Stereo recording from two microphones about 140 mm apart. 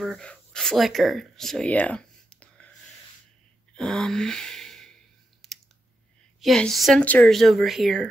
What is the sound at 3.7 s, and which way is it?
Gasp, 5° left (ahead or behind).